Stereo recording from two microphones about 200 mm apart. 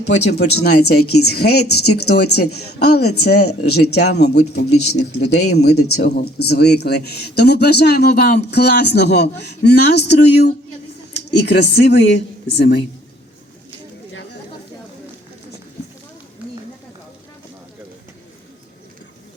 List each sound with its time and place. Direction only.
0.1 s speech: 60° left (ahead or behind)
1.0 s speech: 90° left
1.3 s speech: 55° left (ahead or behind)
1.8 s speech: 90° left
2.6 s speech: 55° left (ahead or behind)